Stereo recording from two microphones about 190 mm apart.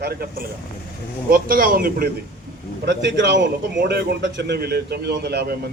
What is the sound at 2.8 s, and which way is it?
Speech, 65° right (ahead or behind).